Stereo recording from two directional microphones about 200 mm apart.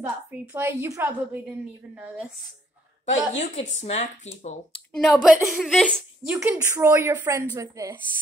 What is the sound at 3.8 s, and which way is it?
Speech, 35° left (ahead or behind).